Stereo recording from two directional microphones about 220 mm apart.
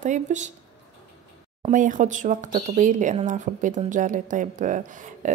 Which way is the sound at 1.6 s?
35° right (ahead or behind).